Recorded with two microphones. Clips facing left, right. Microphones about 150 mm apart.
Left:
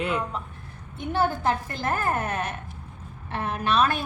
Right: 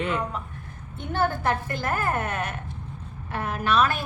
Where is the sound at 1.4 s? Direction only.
25° left (ahead or behind).